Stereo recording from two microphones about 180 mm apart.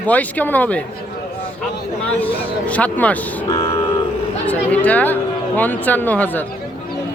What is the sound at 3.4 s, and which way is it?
Vehicle, 20° left (ahead or behind).